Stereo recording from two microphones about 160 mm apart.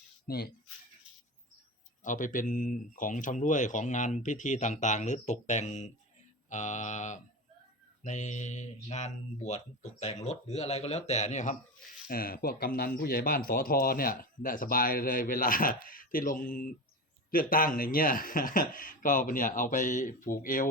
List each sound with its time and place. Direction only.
0.3 s speech: 75° left (ahead or behind)
2.0 s speech: 55° left (ahead or behind)
12.0 s speech: 65° left (ahead or behind)